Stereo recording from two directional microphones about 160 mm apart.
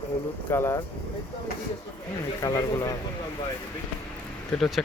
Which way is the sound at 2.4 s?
20° left (ahead or behind).